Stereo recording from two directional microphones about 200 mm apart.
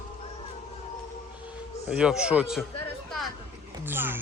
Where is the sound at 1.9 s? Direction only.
5° right (ahead or behind).